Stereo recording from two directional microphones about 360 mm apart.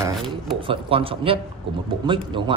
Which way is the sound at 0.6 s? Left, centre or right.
Centre.